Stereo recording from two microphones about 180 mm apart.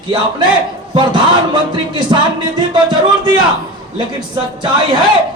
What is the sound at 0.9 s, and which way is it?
Speech, 25° right (ahead or behind).